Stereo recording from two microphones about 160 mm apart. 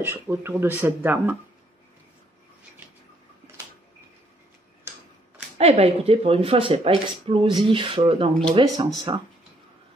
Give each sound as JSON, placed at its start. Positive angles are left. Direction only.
{"t": 0.0, "sound": "speech", "side_deg": -15}
{"t": 5.6, "sound": "speech", "side_deg": -40}